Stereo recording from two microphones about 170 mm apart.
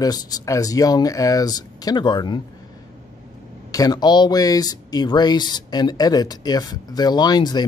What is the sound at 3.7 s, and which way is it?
Speech, 20° left (ahead or behind).